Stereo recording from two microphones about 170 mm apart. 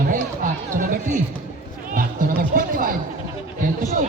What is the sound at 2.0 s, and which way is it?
Music, 55° right (ahead or behind).